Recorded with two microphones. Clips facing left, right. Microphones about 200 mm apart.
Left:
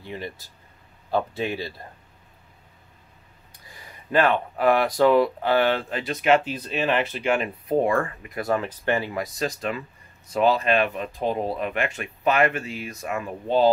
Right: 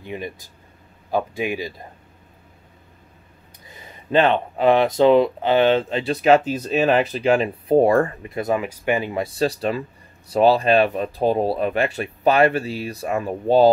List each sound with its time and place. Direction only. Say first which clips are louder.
0.0 s speech: right 3 dB; 15° right (ahead or behind)
3.6 s speech: right 4 dB; 20° right (ahead or behind)